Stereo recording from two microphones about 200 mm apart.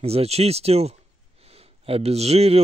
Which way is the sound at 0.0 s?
30° right (ahead or behind).